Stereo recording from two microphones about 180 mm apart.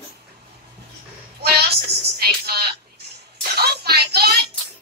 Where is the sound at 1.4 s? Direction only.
65° right (ahead or behind).